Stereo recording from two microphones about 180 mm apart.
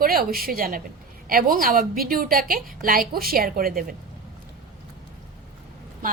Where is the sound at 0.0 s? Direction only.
55° right (ahead or behind).